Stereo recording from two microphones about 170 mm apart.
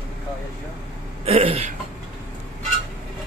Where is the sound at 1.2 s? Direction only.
35° right (ahead or behind).